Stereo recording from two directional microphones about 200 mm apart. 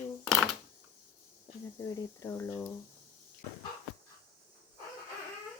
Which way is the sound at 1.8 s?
15° left (ahead or behind).